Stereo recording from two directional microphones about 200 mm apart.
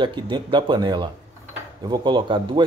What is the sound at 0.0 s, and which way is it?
Speech, 25° right (ahead or behind).